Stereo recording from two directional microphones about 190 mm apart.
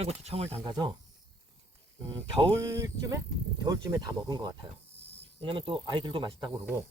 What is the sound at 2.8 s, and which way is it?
Speech, 15° right (ahead or behind).